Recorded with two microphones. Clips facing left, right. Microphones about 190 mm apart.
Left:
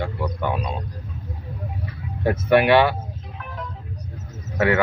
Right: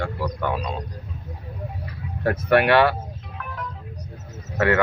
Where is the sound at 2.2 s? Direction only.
5° left (ahead or behind).